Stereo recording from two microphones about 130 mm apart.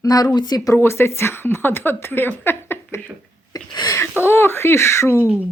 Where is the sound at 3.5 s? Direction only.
30° left (ahead or behind).